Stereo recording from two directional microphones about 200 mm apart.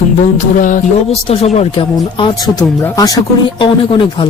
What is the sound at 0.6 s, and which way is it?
Speech, 35° left (ahead or behind).